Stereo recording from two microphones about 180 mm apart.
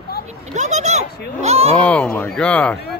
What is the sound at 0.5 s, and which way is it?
Speech, 40° right (ahead or behind).